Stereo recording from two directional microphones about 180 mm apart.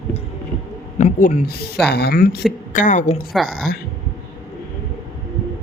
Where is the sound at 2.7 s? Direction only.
45° left (ahead or behind).